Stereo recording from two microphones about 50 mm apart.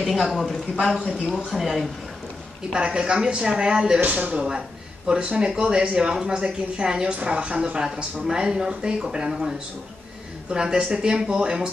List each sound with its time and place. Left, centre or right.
0.0 s a woman's voice: centre
2.7 s a woman's voice: centre